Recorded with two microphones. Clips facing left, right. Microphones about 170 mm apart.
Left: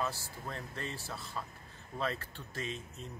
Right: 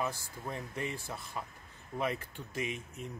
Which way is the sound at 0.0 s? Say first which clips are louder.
Right 1 dB; 15° right (ahead or behind).